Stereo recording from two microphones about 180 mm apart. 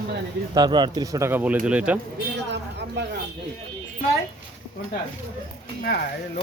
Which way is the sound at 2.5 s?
70° right (ahead or behind).